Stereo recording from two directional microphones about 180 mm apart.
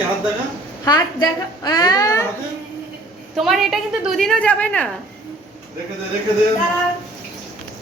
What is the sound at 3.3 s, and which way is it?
A woman's voice, centre (ahead or behind).